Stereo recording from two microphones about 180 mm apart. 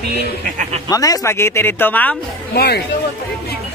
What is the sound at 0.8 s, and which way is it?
Speech, 20° left (ahead or behind).